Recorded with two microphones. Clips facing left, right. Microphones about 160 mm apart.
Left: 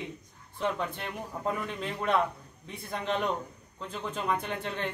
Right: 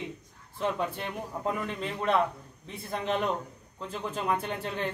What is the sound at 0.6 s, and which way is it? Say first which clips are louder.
A man's voice: right 1 dB; 5° right (ahead or behind).